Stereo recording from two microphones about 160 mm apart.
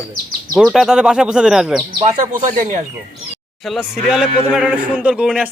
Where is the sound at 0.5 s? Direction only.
Centre (ahead or behind).